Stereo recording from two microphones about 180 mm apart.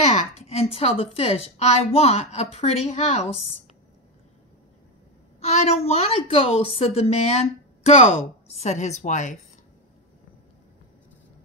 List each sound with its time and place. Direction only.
0.5 s a woman's voice: 35° left (ahead or behind)
5.4 s a woman's voice: 35° left (ahead or behind)